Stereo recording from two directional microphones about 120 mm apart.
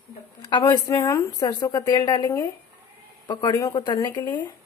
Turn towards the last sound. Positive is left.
turn(degrees=35)  # may be behind; listen again after turning